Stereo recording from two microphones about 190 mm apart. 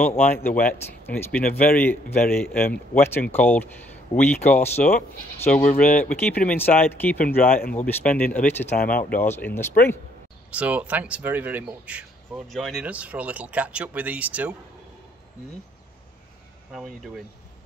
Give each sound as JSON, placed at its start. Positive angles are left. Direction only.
{"t": 0.0, "sound": "speech", "side_deg": 10}
{"t": 2.2, "sound": "a man's voice", "side_deg": 50}
{"t": 2.7, "sound": "speech", "side_deg": 10}
{"t": 5.7, "sound": "a man's voice", "side_deg": 50}
{"t": 5.9, "sound": "speech", "side_deg": 10}
{"t": 7.4, "sound": "a man's voice", "side_deg": 50}
{"t": 7.7, "sound": "speech", "side_deg": 5}
{"t": 10.5, "sound": "speech", "side_deg": -5}
{"t": 16.7, "sound": "speech", "side_deg": 0}